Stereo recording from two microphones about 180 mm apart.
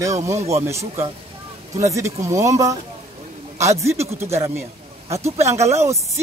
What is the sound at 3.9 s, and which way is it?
Speech, 35° right (ahead or behind).